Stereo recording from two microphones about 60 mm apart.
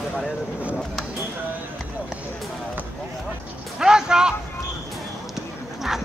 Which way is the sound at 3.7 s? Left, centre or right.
Centre.